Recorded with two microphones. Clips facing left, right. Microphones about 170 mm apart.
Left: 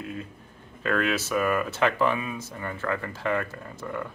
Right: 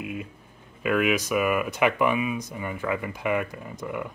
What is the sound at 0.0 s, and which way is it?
Speech, 10° right (ahead or behind).